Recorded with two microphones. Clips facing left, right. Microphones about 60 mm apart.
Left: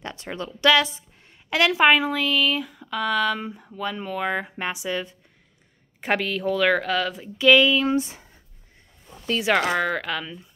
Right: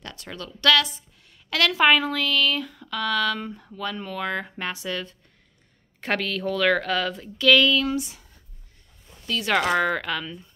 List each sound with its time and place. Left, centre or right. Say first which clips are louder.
0.0 s a woman's voice: left 5 dB; left; by 7.2 s centre
7.3 s a woman's voice: left 2 dB; centre
7.8 s speech: left 4 dB; left
9.4 s speech: left 1 dB; centre
9.8 s speech: right 1 dB; centre